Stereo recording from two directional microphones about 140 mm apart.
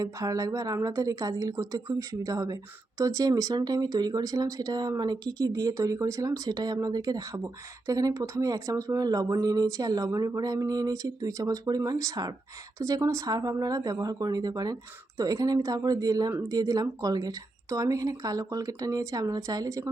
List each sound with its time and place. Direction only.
0.0 s speech: 25° right (ahead or behind)